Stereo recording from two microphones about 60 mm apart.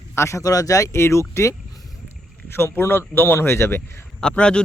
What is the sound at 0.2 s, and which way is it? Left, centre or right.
Speech, left.